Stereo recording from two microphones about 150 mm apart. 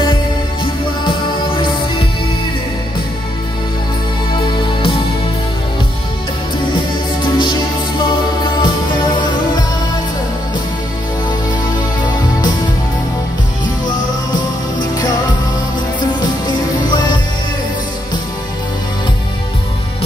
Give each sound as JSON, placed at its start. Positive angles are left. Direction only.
{"t": 1.0, "sound": "music", "side_deg": 35}
{"t": 4.4, "sound": "music", "side_deg": 35}
{"t": 7.2, "sound": "music", "side_deg": 30}
{"t": 16.0, "sound": "music", "side_deg": 30}